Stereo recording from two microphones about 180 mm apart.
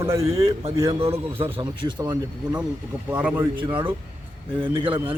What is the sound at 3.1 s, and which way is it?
Speech, 10° right (ahead or behind).